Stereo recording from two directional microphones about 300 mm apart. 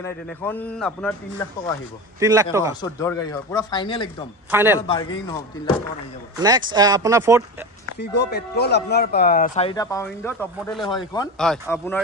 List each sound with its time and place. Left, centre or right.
0.0 s a man's voice: centre
2.1 s speech: centre
2.8 s speech: centre
4.5 s a man's voice: centre
4.7 s speech: centre
6.3 s speech: centre
8.0 s a man's voice: left; by 12.0 s centre